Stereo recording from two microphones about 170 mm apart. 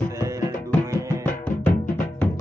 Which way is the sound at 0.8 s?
15° right (ahead or behind).